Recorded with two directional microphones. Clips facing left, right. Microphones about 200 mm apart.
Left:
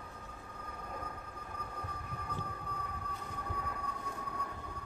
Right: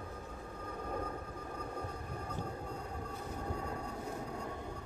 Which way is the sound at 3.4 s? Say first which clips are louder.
Right 3 dB; 25° right (ahead or behind).